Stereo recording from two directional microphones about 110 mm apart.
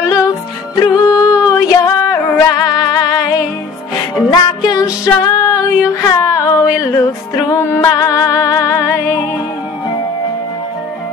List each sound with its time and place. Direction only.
0.7 s music: 35° left (ahead or behind)